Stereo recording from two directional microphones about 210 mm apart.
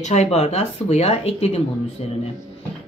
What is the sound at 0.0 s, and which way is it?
Speech, 35° left (ahead or behind).